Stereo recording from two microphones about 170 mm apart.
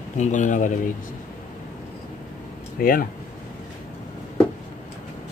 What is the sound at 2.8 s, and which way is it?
Speech, 55° left (ahead or behind).